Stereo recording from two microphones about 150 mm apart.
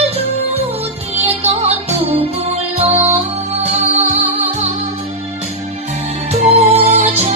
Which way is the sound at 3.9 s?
45° right (ahead or behind).